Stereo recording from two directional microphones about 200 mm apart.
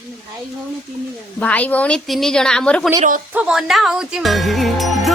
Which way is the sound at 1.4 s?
5° left (ahead or behind).